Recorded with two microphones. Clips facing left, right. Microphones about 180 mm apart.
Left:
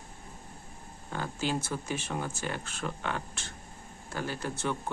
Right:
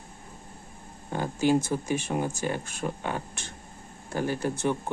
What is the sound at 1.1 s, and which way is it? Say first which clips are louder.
Speech: right 8 dB; 15° right (ahead or behind).